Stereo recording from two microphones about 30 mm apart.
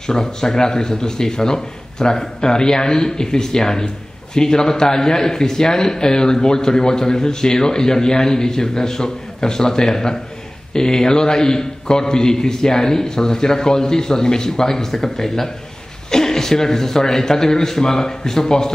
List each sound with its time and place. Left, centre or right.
0.0 s a man's voice: left